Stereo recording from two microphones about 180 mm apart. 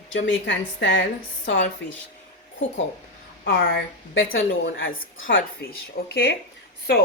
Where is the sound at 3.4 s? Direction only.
60° left (ahead or behind).